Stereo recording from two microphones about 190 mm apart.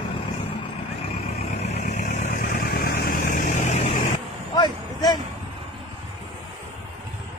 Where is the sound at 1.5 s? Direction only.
35° left (ahead or behind).